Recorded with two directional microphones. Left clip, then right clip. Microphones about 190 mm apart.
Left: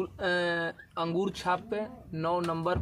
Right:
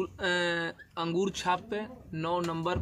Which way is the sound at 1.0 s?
10° right (ahead or behind).